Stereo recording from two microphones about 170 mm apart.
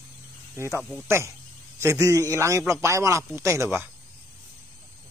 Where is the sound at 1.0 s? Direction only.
15° right (ahead or behind).